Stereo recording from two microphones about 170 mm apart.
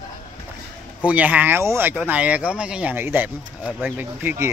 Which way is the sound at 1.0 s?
10° right (ahead or behind).